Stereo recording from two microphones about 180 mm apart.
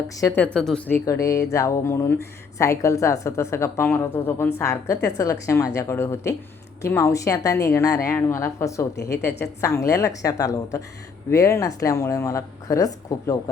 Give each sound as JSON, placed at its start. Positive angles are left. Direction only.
{"t": 0.2, "sound": "speech", "side_deg": 10}
{"t": 9.0, "sound": "a woman's voice", "side_deg": 65}
{"t": 9.6, "sound": "a woman's voice", "side_deg": 15}